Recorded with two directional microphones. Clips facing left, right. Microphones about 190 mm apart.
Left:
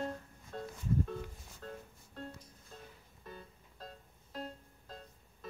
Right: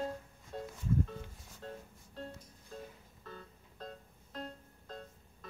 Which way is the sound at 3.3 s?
10° left (ahead or behind).